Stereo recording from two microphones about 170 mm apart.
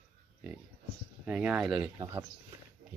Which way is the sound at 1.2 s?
10° right (ahead or behind).